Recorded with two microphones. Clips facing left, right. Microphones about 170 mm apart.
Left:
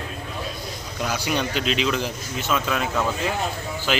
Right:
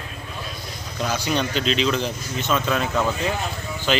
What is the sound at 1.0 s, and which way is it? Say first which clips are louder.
A man's voice: right 1 dB; 10° left (ahead or behind).